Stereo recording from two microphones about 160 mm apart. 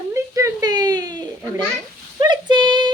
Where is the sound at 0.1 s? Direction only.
20° right (ahead or behind).